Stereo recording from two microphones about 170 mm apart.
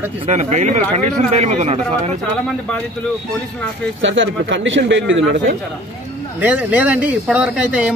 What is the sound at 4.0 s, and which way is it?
Speech, 90° right.